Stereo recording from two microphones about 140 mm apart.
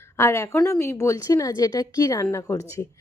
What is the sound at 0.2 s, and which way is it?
A woman's voice, 20° left (ahead or behind).